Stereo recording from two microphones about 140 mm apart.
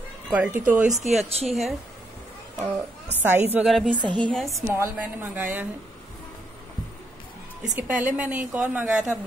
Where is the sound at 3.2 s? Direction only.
15° right (ahead or behind).